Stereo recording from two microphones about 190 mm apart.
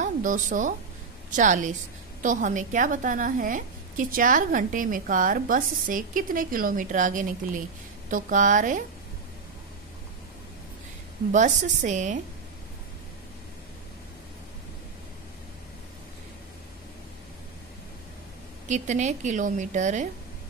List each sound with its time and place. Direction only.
0.0 s a woman's voice: 45° right (ahead or behind)
11.3 s a woman's voice: 40° right (ahead or behind)
18.7 s a woman's voice: 40° right (ahead or behind)